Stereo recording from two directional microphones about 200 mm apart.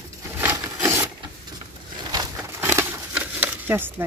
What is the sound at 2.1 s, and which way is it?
Crumpling, 15° right (ahead or behind).